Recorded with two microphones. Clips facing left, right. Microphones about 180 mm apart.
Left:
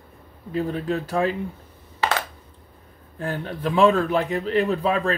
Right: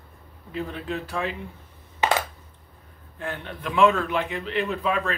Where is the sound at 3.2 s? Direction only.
35° left (ahead or behind).